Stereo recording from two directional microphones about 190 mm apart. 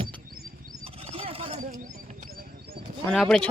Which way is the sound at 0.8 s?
30° right (ahead or behind).